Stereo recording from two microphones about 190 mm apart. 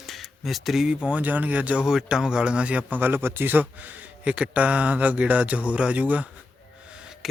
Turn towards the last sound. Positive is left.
turn(degrees=-5)  # may be behind; listen again after turning